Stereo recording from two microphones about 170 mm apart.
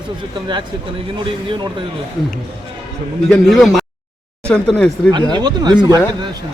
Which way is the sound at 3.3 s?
Centre (ahead or behind).